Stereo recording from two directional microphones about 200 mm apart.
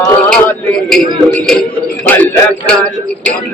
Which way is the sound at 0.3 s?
5° left (ahead or behind).